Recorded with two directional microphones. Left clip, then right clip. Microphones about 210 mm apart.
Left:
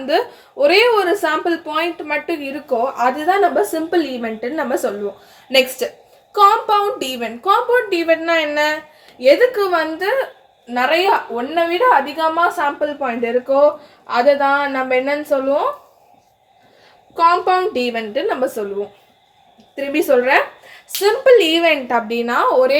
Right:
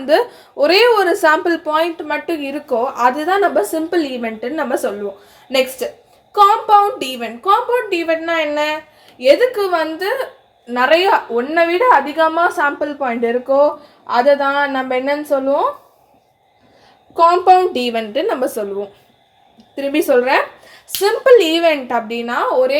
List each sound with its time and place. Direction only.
0.0 s a woman's voice: 25° right (ahead or behind); by 10.1 s 10° right (ahead or behind)
10.8 s a woman's voice: 30° right (ahead or behind)
17.2 s a woman's voice: 30° right (ahead or behind)
19.7 s a woman's voice: 25° right (ahead or behind)
21.9 s a woman's voice: 5° left (ahead or behind)